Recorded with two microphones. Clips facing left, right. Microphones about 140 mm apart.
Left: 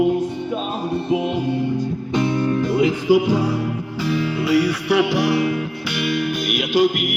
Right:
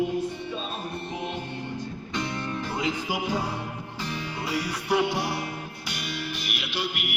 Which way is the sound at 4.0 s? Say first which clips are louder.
Left 12 dB; 90° left.